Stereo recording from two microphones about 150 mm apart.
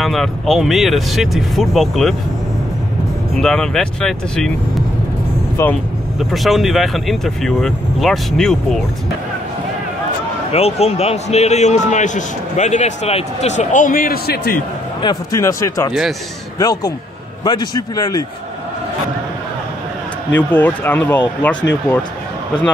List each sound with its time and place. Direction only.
0.0 s speech: centre (ahead or behind)
3.3 s speech: 5° left (ahead or behind)
5.6 s speech: 20° left (ahead or behind)
6.1 s speech: centre (ahead or behind)
10.5 s a man's voice: 45° left (ahead or behind); by 14.6 s 90° left
15.0 s speech: 25° left (ahead or behind)
15.9 s speech: 5° right (ahead or behind)
16.5 s speech: 25° left (ahead or behind)
20.3 s speech: 10° left (ahead or behind)